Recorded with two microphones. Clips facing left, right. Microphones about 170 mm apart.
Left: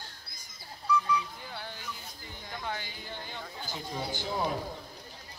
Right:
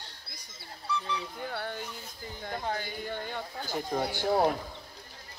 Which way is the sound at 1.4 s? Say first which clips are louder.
Right 7 dB; 55° right (ahead or behind).